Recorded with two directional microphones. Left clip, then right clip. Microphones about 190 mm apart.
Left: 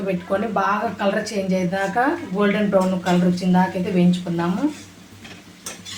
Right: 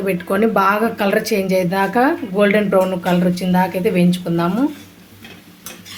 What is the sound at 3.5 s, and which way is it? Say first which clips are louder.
Speech: right 5 dB; 60° right (ahead or behind).